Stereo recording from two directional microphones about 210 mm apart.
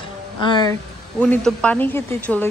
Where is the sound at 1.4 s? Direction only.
5° left (ahead or behind).